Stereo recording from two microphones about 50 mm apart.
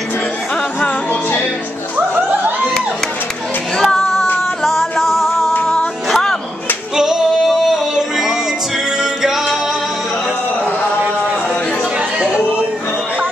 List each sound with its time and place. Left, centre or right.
0.7 s music: left
3.7 s female singing: centre
5.0 s music: centre
7.0 s male singing: centre
12.2 s a sound: centre